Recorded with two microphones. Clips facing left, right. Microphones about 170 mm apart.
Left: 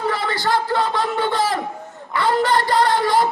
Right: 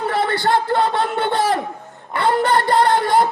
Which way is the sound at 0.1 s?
55° right (ahead or behind).